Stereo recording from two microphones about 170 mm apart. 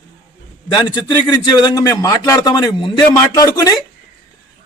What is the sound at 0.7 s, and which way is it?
A man's voice, 25° left (ahead or behind).